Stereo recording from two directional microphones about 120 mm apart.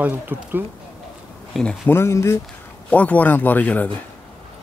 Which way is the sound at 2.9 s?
15° left (ahead or behind).